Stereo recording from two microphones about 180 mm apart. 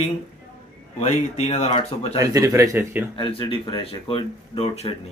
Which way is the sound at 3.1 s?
30° left (ahead or behind).